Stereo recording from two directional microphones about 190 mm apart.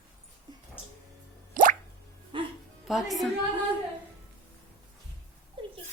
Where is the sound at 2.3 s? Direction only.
25° right (ahead or behind).